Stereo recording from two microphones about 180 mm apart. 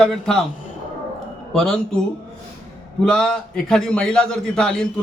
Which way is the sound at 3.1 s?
5° left (ahead or behind).